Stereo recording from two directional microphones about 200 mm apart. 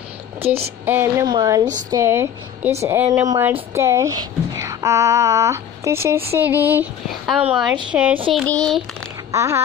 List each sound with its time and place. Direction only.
0.4 s speech: 30° right (ahead or behind)
0.8 s speech: 10° right (ahead or behind)
8.3 s child singing: centre (ahead or behind)
9.3 s a sound: 15° right (ahead or behind)